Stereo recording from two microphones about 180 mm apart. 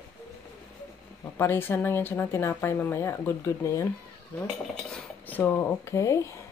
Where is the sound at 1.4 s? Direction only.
10° left (ahead or behind).